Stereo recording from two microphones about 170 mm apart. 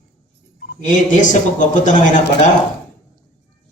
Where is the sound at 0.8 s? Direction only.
45° left (ahead or behind).